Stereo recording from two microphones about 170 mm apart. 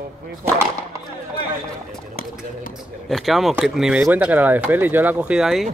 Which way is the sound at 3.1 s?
Centre (ahead or behind).